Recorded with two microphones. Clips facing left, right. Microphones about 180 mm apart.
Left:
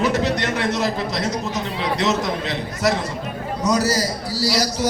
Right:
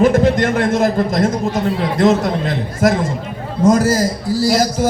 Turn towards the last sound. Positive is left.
turn(degrees=-50)  # may be behind; listen again after turning